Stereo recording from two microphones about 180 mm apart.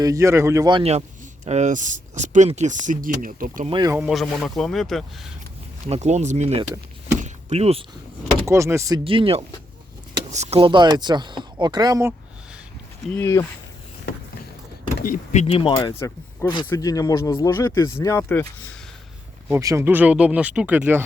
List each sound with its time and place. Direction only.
0.0 s speech: 15° right (ahead or behind)
0.8 s speech: 35° right (ahead or behind)
3.7 s speech: 25° right (ahead or behind)
3.9 s speech: 5° right (ahead or behind)
5.9 s speech: 40° right (ahead or behind)
7.2 s a sound: 40° right (ahead or behind)
8.4 s speech: 15° right (ahead or behind)
9.0 s speech: 30° right (ahead or behind)
13.1 s speech: 15° left (ahead or behind)
15.0 s speech: 45° left (ahead or behind); by 18.8 s 10° left (ahead or behind)
19.5 s speech: 15° right (ahead or behind)